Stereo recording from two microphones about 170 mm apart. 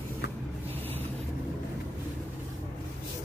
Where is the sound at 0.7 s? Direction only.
10° left (ahead or behind).